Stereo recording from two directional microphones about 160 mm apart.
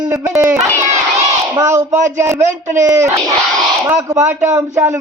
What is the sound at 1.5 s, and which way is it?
A man's voice, 20° right (ahead or behind).